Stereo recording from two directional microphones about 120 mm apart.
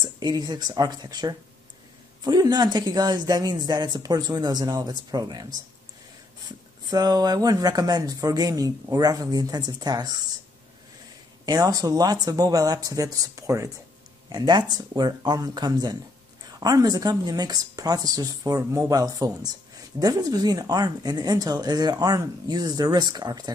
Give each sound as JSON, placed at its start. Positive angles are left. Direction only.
{"t": 0.0, "sound": "speech", "side_deg": -40}
{"t": 6.9, "sound": "speech", "side_deg": -35}
{"t": 11.4, "sound": "speech", "side_deg": -35}